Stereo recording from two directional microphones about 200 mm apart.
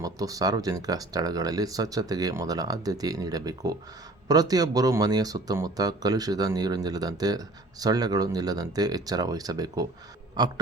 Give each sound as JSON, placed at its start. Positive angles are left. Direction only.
{"t": 0.0, "sound": "speech", "side_deg": -15}